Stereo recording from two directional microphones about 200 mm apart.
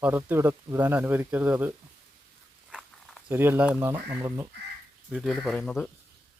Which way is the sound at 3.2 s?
10° right (ahead or behind).